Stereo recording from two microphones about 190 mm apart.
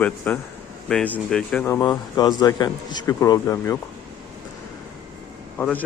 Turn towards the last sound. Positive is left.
turn(degrees=10)  # may be behind; listen again after turning